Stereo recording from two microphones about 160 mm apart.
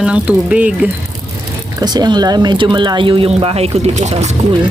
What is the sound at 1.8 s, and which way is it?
Speech, 25° right (ahead or behind).